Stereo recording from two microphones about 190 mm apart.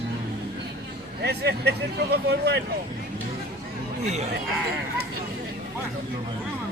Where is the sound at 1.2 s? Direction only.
60° right (ahead or behind).